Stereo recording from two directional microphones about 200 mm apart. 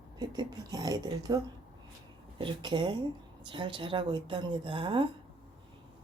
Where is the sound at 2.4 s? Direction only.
25° right (ahead or behind).